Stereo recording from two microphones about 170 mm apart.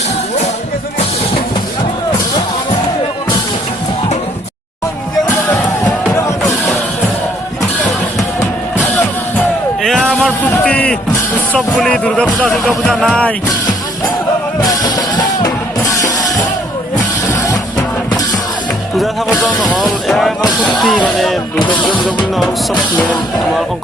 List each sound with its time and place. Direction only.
5.8 s music: 15° left (ahead or behind)
9.8 s a sound: centre (ahead or behind)
11.5 s speech: 5° left (ahead or behind)
14.6 s music: 20° left (ahead or behind)
17.4 s music: 25° left (ahead or behind)
18.9 s music: centre (ahead or behind)
20.4 s music: 25° left (ahead or behind)
20.7 s a sound: centre (ahead or behind)
23.0 s speech: 5° left (ahead or behind)